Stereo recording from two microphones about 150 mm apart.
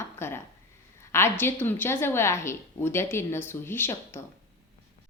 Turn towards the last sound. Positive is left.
turn(degrees=15)  # may be behind; listen again after turning